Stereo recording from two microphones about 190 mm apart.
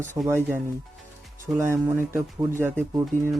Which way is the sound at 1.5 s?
10° right (ahead or behind).